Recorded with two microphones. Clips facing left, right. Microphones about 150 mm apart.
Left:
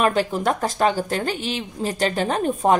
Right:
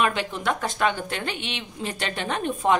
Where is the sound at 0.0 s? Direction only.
40° left (ahead or behind).